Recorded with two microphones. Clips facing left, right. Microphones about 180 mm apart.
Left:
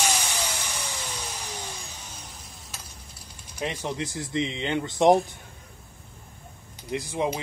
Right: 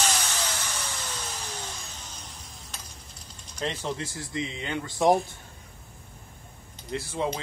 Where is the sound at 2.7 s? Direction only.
10° left (ahead or behind).